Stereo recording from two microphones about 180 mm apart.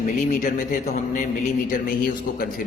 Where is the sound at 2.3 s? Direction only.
60° left (ahead or behind).